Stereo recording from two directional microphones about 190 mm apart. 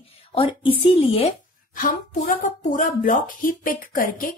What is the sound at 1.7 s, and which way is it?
A woman's voice, 45° left (ahead or behind).